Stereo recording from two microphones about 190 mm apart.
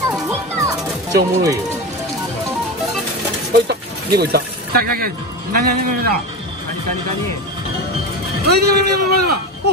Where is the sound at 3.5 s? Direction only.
60° right (ahead or behind).